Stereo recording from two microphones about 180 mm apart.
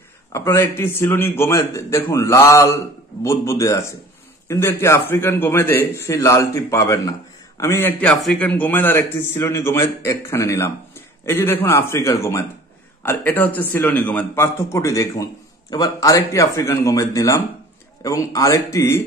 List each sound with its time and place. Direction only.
0.3 s a man's voice: 15° left (ahead or behind)